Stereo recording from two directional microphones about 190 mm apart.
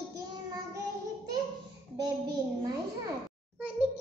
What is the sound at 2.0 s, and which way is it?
Speech, 20° right (ahead or behind).